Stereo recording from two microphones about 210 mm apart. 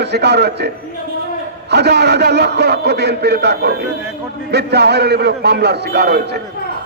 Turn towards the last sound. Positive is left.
turn(degrees=-50)  # may be behind; listen again after turning